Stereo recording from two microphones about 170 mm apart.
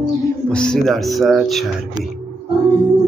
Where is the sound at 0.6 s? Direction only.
Centre (ahead or behind).